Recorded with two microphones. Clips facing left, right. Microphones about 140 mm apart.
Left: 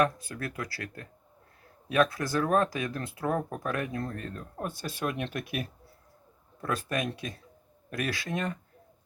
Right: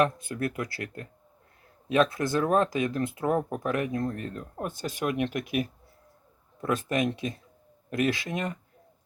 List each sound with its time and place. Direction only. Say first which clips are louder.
0.0 s speech: right 2 dB; 20° right (ahead or behind)